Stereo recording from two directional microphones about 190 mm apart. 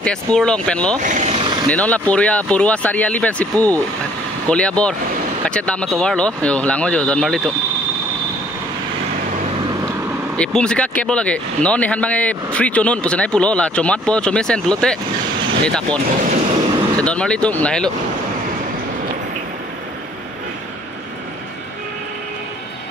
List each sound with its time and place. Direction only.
0.0 s speech: 5° left (ahead or behind)
1.0 s vehicle: 40° right (ahead or behind)
1.7 s speech: 5° left (ahead or behind)
10.3 s speech: 5° left (ahead or behind)
17.0 s speech: 5° left (ahead or behind)